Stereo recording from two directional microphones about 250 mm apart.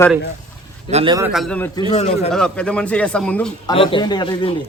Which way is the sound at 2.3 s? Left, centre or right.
Centre.